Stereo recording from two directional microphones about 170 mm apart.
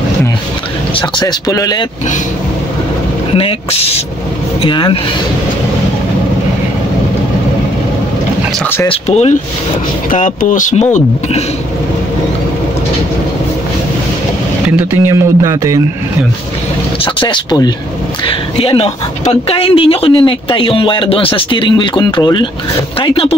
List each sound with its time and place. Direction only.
1.1 s speech: 20° left (ahead or behind)
3.3 s speech: 35° left (ahead or behind)
8.8 s speech: 40° left (ahead or behind)
14.8 s speech: 15° right (ahead or behind)
17.0 s speech: 30° left (ahead or behind)